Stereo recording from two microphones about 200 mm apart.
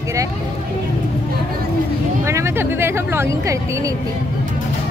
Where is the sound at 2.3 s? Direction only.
10° right (ahead or behind).